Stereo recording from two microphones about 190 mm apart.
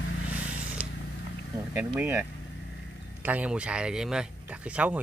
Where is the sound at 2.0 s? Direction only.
15° right (ahead or behind).